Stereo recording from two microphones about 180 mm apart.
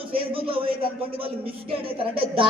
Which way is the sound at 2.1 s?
30° right (ahead or behind).